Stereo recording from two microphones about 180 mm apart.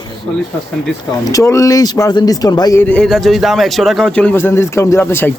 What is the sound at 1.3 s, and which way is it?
A man's voice, 15° left (ahead or behind).